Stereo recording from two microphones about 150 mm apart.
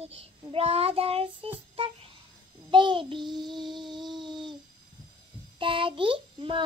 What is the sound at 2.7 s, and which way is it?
Child singing, 30° right (ahead or behind).